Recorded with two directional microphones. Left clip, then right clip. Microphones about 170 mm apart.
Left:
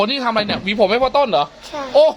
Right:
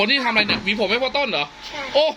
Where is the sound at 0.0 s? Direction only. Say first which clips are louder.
Even; 15° left (ahead or behind).